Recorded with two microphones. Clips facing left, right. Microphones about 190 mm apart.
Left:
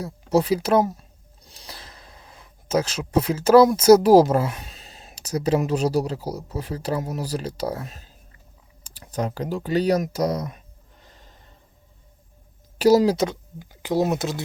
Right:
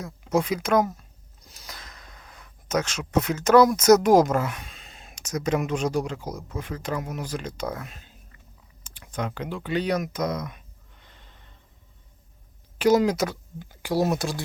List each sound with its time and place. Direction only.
0.0 s speech: 35° left (ahead or behind)
8.9 s a sound: 40° left (ahead or behind)
12.8 s speech: 35° left (ahead or behind)